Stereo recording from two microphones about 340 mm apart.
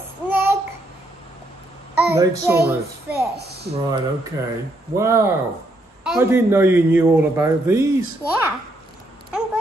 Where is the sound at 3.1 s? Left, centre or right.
Right.